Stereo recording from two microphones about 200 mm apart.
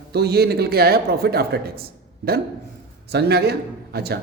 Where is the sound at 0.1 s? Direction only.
55° right (ahead or behind).